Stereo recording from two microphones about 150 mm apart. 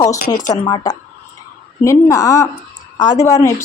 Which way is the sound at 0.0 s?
25° left (ahead or behind).